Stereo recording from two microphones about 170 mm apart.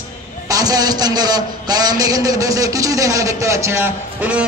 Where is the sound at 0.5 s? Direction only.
20° right (ahead or behind).